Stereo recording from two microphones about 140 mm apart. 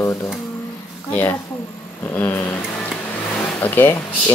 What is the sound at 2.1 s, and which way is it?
Speech, 15° left (ahead or behind).